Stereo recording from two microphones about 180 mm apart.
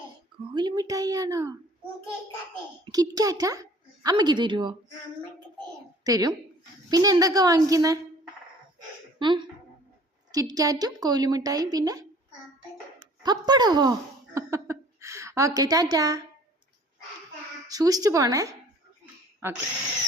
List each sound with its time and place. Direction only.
0.5 s a woman's voice: 25° right (ahead or behind)
2.8 s a woman's voice: 20° right (ahead or behind)
6.1 s a woman's voice: 20° right (ahead or behind)
9.1 s a woman's voice: 25° right (ahead or behind)
13.2 s a woman's voice: 20° right (ahead or behind)
17.7 s a woman's voice: 20° right (ahead or behind)